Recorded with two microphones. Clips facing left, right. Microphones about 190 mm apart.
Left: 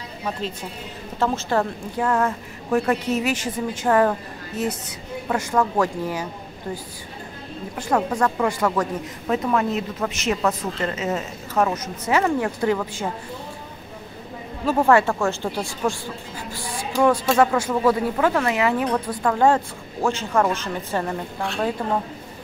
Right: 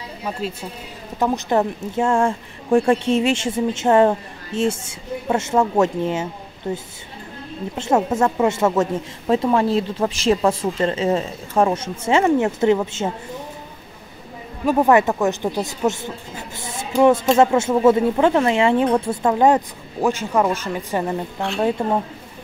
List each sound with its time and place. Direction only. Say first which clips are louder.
0.2 s a woman's voice: right 1 dB; 5° right (ahead or behind)
1.2 s a woman's voice: right 3 dB; 15° right (ahead or behind)
14.7 s a woman's voice: right 2 dB; 20° right (ahead or behind)
21.8 s a woman's voice: right 4 dB; 25° right (ahead or behind)